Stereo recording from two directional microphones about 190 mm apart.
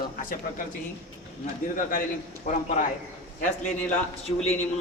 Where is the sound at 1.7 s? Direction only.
45° left (ahead or behind).